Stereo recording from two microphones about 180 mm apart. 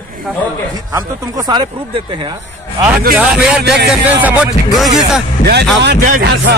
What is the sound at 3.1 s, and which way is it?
A man's voice, 5° right (ahead or behind).